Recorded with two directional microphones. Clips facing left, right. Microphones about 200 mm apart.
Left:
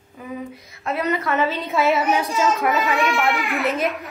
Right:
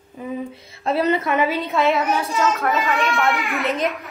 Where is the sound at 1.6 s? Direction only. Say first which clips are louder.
Even; centre (ahead or behind).